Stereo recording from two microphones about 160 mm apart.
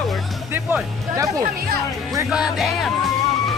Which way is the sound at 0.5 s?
10° right (ahead or behind).